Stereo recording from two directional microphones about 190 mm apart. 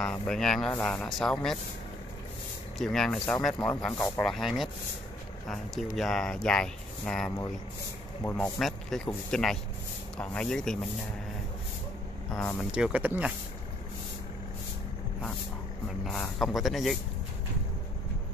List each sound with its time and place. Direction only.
0.0 s speech: 5° left (ahead or behind)
2.8 s speech: centre (ahead or behind)
3.5 s speech: 20° left (ahead or behind)
4.0 s speech: 5° left (ahead or behind)
12.4 s speech: 10° left (ahead or behind)
12.7 s speech: 5° right (ahead or behind)
16.1 s speech: centre (ahead or behind)